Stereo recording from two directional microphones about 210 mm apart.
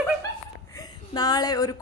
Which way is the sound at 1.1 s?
20° left (ahead or behind).